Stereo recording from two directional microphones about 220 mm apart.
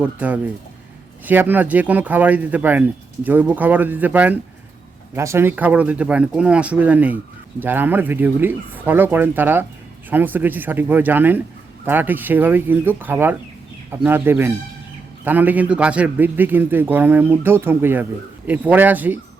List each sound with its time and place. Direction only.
0.0 s speech: 5° right (ahead or behind)